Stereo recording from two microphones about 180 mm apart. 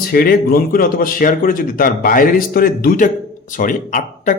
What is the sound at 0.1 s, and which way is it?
A man's voice, 55° left (ahead or behind).